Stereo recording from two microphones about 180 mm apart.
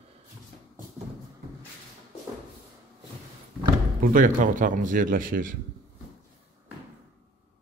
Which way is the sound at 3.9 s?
45° right (ahead or behind).